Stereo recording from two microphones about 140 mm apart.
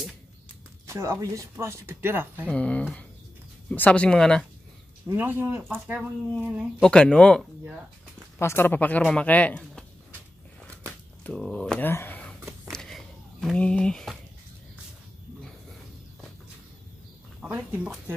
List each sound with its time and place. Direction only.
0.8 s speech: 20° right (ahead or behind)
2.4 s speech: 10° left (ahead or behind)
5.1 s speech: 15° right (ahead or behind)
6.8 s speech: 5° left (ahead or behind)
8.4 s speech: 15° left (ahead or behind)
10.7 s a sound: 5° left (ahead or behind)
17.4 s speech: 10° right (ahead or behind)